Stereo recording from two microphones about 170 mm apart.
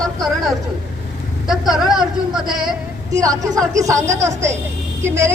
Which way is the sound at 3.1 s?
20° right (ahead or behind).